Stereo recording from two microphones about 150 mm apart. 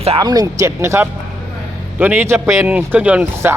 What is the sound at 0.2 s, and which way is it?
Speech, 25° right (ahead or behind).